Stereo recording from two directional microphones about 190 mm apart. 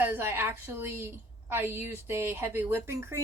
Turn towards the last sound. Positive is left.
turn(degrees=-15)  # may be behind; listen again after turning